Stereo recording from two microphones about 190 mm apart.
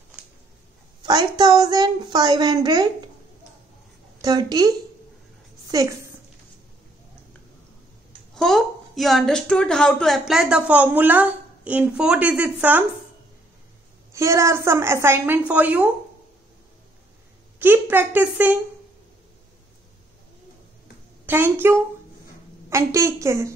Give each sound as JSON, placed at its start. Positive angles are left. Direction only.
{"t": 1.0, "sound": "a woman's voice", "side_deg": -20}
{"t": 4.2, "sound": "a woman's voice", "side_deg": -20}
{"t": 8.4, "sound": "a woman's voice", "side_deg": 0}
{"t": 14.1, "sound": "a woman's voice", "side_deg": -15}
{"t": 17.6, "sound": "a woman's voice", "side_deg": -10}
{"t": 21.3, "sound": "a woman's voice", "side_deg": -10}